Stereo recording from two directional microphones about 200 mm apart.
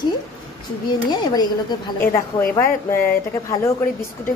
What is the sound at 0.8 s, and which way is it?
A woman's voice, 20° left (ahead or behind).